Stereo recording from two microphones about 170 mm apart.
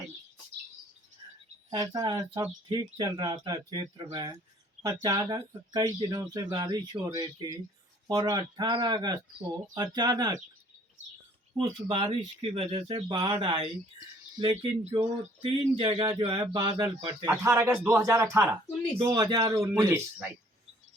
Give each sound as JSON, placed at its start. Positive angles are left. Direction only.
{"t": 1.2, "sound": "a sound", "side_deg": -30}
{"t": 1.7, "sound": "speech", "side_deg": -25}
{"t": 11.5, "sound": "speech", "side_deg": -30}
{"t": 17.2, "sound": "speech", "side_deg": -10}